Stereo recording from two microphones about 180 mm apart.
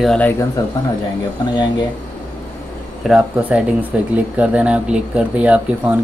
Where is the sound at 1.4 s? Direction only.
25° left (ahead or behind).